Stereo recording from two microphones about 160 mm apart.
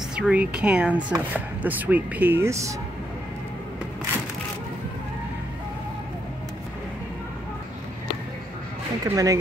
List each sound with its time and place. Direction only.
0.1 s speech: 5° right (ahead or behind)
9.0 s speech: 20° right (ahead or behind)